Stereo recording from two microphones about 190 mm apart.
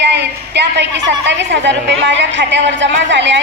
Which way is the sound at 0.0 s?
65° right (ahead or behind).